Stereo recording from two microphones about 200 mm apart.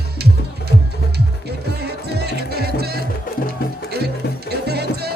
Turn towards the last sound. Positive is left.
turn(degrees=-55)  # may be behind; listen again after turning